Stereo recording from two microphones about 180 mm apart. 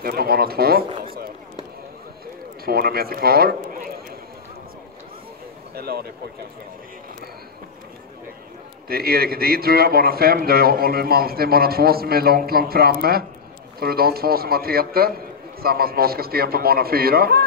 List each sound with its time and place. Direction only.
0.0 s a man's voice: 55° right (ahead or behind)
2.6 s a man's voice: 60° right (ahead or behind)
5.8 s a man's voice: 60° right (ahead or behind)
8.8 s a man's voice: 60° right (ahead or behind)